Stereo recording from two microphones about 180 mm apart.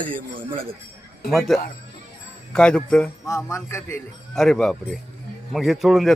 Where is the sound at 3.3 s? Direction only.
15° left (ahead or behind).